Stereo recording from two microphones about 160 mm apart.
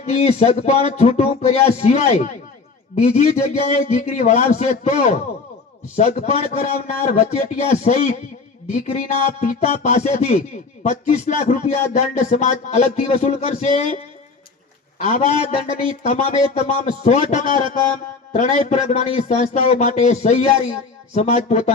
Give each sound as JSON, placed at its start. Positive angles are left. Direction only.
{"t": 0.0, "sound": "speech", "side_deg": 40}
{"t": 15.0, "sound": "speech", "side_deg": 45}